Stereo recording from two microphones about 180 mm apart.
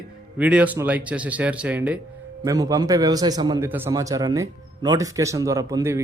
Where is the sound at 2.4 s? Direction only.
20° right (ahead or behind).